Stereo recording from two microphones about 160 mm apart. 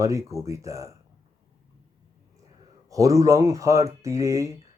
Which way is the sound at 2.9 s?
20° right (ahead or behind).